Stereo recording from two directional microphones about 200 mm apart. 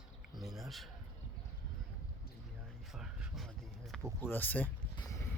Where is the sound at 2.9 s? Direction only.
Centre (ahead or behind).